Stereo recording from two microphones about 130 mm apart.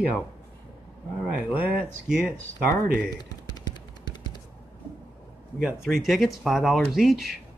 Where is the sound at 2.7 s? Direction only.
30° left (ahead or behind).